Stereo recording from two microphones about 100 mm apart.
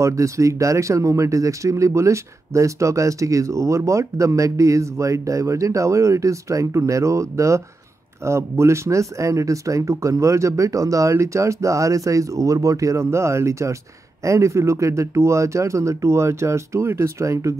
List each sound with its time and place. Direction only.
0.0 s speech: 30° right (ahead or behind)